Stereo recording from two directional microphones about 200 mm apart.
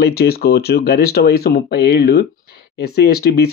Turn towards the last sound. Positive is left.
turn(degrees=55)  # may be behind; listen again after turning